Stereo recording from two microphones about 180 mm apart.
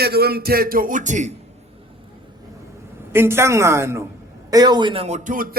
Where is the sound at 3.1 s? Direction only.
15° right (ahead or behind).